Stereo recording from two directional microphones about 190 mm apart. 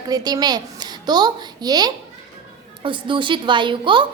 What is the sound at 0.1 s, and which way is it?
A woman's voice, 20° right (ahead or behind).